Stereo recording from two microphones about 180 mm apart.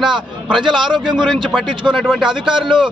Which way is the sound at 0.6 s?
25° right (ahead or behind).